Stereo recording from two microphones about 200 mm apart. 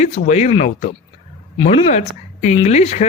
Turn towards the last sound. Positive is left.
turn(degrees=35)  # may be behind; listen again after turning